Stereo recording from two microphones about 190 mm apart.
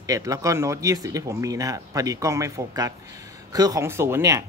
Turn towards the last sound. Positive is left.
turn(degrees=-15)  # may be behind; listen again after turning